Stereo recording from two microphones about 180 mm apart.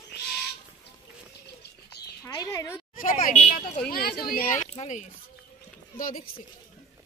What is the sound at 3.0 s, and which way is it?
Speech, 40° left (ahead or behind).